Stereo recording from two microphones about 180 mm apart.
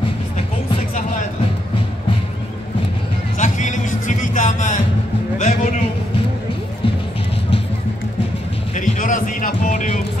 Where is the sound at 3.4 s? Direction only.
45° left (ahead or behind).